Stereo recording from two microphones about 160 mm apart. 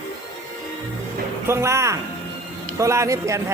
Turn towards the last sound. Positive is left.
turn(degrees=-20)  # may be behind; listen again after turning